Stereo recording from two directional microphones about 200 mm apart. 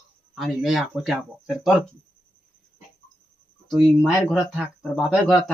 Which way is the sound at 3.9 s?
Centre (ahead or behind).